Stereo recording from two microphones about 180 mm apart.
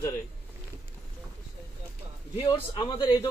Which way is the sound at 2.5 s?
25° left (ahead or behind).